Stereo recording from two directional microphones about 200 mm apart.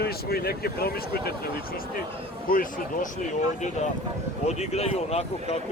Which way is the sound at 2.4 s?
45° left (ahead or behind).